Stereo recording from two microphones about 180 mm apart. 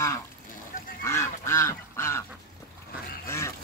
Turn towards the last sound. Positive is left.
turn(degrees=15)  # may be behind; listen again after turning